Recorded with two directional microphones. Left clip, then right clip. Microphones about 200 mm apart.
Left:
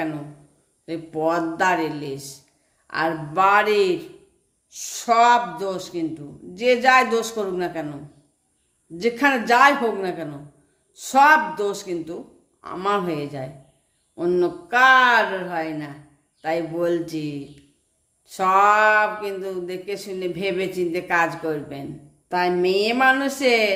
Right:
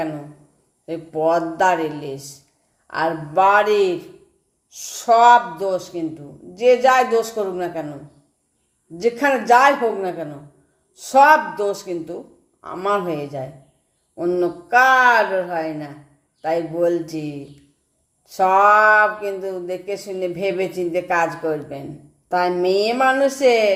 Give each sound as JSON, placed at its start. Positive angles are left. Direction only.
{"t": 0.9, "sound": "speech", "side_deg": 10}
{"t": 9.0, "sound": "speech", "side_deg": 10}
{"t": 22.3, "sound": "a woman's voice", "side_deg": 0}